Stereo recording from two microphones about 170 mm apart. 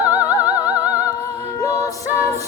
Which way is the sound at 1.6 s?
20° left (ahead or behind).